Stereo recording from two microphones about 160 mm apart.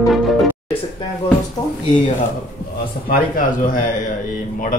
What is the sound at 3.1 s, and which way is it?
Speech, 55° left (ahead or behind).